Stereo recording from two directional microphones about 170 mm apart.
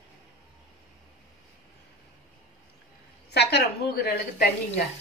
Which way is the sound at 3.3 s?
80° left.